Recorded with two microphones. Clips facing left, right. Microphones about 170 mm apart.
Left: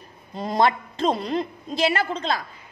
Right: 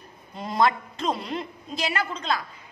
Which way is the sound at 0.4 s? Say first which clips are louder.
Left 2 dB; 35° left (ahead or behind).